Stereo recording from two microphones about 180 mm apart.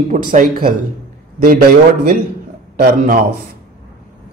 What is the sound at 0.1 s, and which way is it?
Speech, 50° right (ahead or behind).